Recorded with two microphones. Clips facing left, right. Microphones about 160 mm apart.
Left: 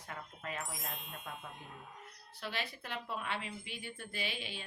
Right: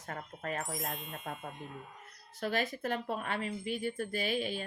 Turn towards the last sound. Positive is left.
turn(degrees=-45)  # may be behind; listen again after turning